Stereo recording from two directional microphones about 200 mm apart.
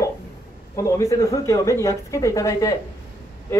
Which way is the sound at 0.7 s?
15° left (ahead or behind).